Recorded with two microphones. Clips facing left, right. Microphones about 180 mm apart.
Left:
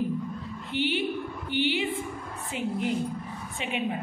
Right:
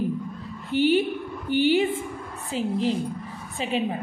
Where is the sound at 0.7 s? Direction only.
40° right (ahead or behind).